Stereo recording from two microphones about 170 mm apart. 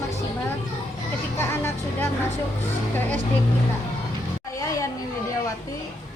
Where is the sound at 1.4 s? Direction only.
15° left (ahead or behind).